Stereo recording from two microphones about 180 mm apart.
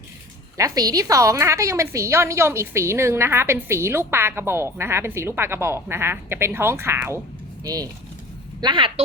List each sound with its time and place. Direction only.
0.5 s a woman's voice: 20° right (ahead or behind)